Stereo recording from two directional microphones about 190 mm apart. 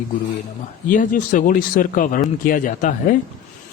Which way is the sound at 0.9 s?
45° left (ahead or behind).